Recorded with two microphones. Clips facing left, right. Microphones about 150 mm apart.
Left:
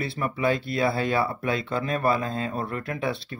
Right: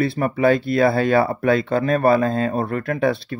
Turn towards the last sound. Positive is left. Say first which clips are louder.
# right 9 dB
turn(degrees=-50)  # may be behind; listen again after turning